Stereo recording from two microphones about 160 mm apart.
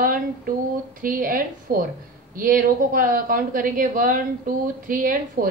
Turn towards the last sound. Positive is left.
turn(degrees=-65)  # may be behind; listen again after turning